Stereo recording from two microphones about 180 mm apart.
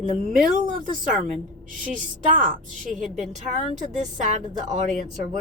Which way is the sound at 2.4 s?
45° right (ahead or behind).